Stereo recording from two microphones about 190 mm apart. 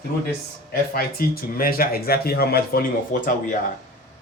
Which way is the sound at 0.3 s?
50° left (ahead or behind).